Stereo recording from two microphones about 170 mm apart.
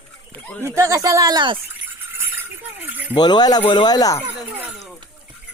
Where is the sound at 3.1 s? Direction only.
25° left (ahead or behind).